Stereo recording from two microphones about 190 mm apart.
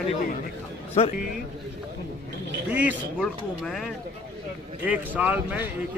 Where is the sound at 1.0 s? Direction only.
35° left (ahead or behind).